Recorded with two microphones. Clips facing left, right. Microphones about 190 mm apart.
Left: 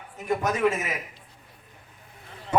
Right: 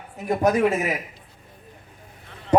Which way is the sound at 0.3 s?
35° right (ahead or behind).